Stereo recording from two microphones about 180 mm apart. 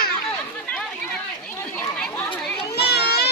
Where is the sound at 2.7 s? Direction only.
65° left (ahead or behind).